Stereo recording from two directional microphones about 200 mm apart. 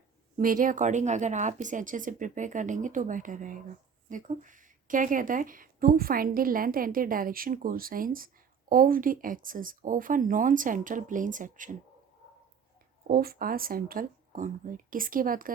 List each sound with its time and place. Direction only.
0.3 s speech: 45° right (ahead or behind)
13.1 s speech: 50° right (ahead or behind)